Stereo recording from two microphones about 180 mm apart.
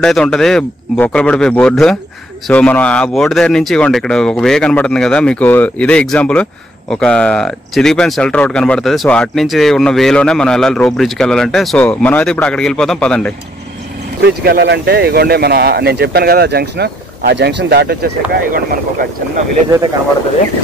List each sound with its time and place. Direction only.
0.0 s speech: 5° left (ahead or behind)
14.2 s speech: 65° right (ahead or behind)